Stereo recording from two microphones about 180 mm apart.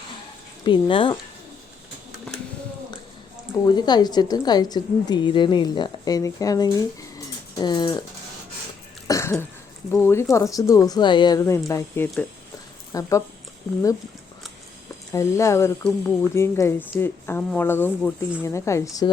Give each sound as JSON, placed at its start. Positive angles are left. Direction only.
{"t": 0.6, "sound": "a woman's voice", "side_deg": 25}
{"t": 3.6, "sound": "a woman's voice", "side_deg": 25}
{"t": 9.0, "sound": "cough", "side_deg": 15}
{"t": 9.9, "sound": "speech", "side_deg": 15}
{"t": 15.1, "sound": "speech", "side_deg": 15}